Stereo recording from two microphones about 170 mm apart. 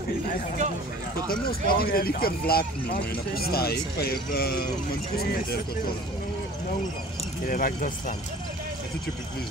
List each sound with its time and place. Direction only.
1.3 s speech: 60° left (ahead or behind)
7.4 s speech: 55° left (ahead or behind)